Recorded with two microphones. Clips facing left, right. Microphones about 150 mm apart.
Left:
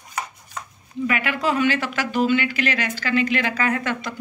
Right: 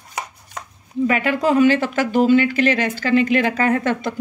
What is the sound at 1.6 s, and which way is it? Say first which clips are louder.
Speech: right 6 dB; 45° right (ahead or behind).